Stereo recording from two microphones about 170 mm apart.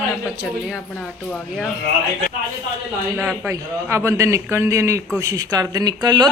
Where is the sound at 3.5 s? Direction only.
15° right (ahead or behind).